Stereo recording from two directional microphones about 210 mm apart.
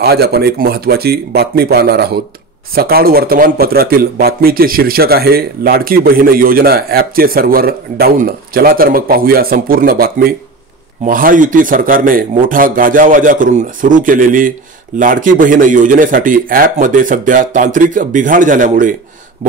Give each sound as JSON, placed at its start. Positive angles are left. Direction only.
{"t": 0.0, "sound": "a man's voice", "side_deg": -50}